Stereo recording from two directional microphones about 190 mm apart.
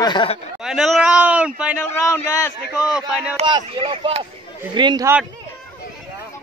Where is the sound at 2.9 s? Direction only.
5° right (ahead or behind).